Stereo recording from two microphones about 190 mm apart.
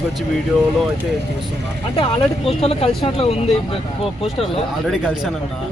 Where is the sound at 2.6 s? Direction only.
30° left (ahead or behind).